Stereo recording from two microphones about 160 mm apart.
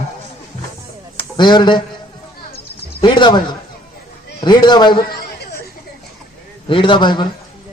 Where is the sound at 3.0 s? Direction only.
30° left (ahead or behind).